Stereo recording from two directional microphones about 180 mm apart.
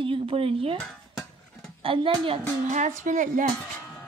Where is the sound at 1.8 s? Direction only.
30° right (ahead or behind).